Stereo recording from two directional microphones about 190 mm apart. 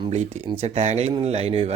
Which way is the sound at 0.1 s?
30° right (ahead or behind).